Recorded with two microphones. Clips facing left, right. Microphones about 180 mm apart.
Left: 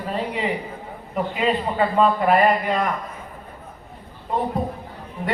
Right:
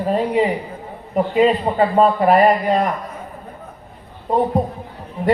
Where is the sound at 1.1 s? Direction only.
40° right (ahead or behind).